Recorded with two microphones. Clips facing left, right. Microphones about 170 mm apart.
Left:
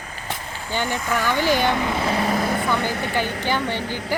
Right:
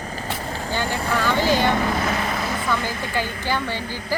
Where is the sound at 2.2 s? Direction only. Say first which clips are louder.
Left 4 dB; 35° left (ahead or behind).